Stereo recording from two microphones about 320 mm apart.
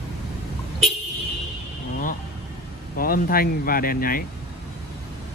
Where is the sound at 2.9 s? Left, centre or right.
Left.